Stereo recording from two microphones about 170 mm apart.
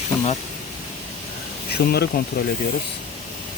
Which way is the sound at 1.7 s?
70° left (ahead or behind).